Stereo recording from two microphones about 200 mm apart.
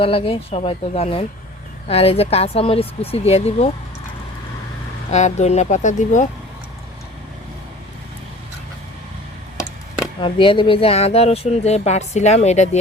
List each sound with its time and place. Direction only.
0.0 s speech: 30° left (ahead or behind)
5.1 s speech: 35° left (ahead or behind)
10.2 s speech: 25° left (ahead or behind)